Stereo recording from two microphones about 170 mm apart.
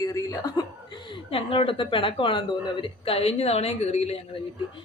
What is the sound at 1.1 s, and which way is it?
Speech, 30° left (ahead or behind).